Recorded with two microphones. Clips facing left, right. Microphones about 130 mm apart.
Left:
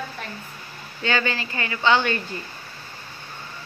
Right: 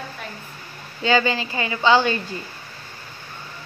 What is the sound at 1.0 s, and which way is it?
Speech, 20° right (ahead or behind).